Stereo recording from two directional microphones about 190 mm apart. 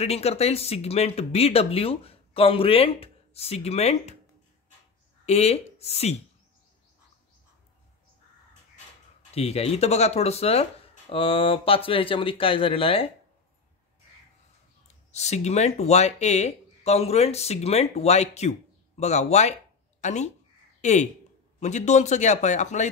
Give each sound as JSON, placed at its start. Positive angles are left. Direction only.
{"t": 0.0, "sound": "speech", "side_deg": 35}
{"t": 5.2, "sound": "speech", "side_deg": 35}
{"t": 9.3, "sound": "speech", "side_deg": 35}
{"t": 15.0, "sound": "speech", "side_deg": 35}